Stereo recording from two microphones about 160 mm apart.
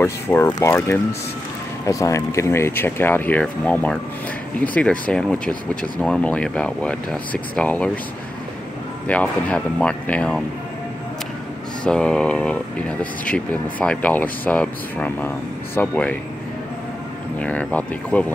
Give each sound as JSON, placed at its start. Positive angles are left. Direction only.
{"t": 0.0, "sound": "speech", "side_deg": 15}
{"t": 9.0, "sound": "speech", "side_deg": 10}
{"t": 11.8, "sound": "speech", "side_deg": 5}
{"t": 17.4, "sound": "speech", "side_deg": 10}